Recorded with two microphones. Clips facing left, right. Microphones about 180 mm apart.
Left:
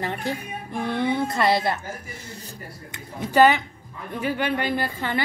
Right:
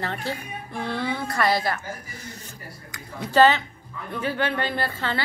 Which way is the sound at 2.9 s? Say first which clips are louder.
Left 2 dB; 25° left (ahead or behind).